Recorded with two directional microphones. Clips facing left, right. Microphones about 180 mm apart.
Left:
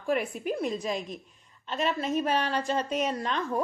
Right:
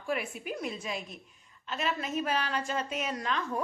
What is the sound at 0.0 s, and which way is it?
A woman's voice, 40° left (ahead or behind).